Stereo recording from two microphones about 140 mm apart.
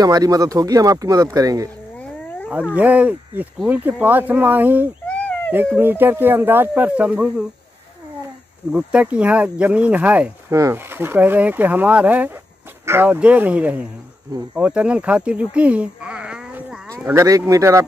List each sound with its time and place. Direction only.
0.0 s speech: 25° right (ahead or behind)
2.0 s cat: 10° left (ahead or behind)
2.7 s speech: 10° right (ahead or behind)
5.0 s a sound: 10° left (ahead or behind)
5.8 s speech: 15° right (ahead or behind)
8.7 s speech: 5° right (ahead or behind)
17.1 s speech: 25° right (ahead or behind)